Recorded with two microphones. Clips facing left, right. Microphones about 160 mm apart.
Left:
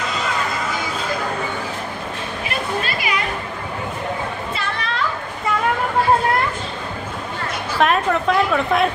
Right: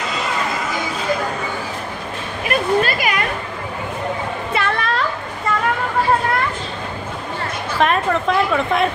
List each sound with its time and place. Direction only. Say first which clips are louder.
2.4 s a sound: right 8 dB; 55° right (ahead or behind)
4.6 s children playing: right 9 dB; 50° right (ahead or behind)
7.8 s a woman's voice: even; centre (ahead or behind)